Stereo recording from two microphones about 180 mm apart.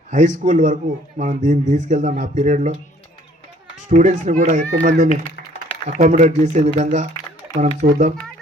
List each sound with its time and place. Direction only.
0.1 s speech: 45° right (ahead or behind)
3.8 s speech: 45° right (ahead or behind)